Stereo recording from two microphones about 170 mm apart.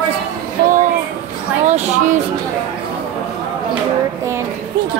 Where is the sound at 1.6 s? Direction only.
40° right (ahead or behind).